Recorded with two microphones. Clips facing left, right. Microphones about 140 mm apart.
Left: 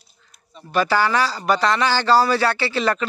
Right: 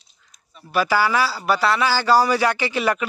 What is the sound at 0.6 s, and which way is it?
A man's voice, 10° right (ahead or behind).